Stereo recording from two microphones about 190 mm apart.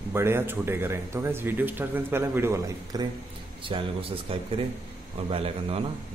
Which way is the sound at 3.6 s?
25° right (ahead or behind).